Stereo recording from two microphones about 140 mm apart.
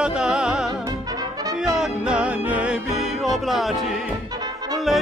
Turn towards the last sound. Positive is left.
turn(degrees=0)  # may be behind; listen again after turning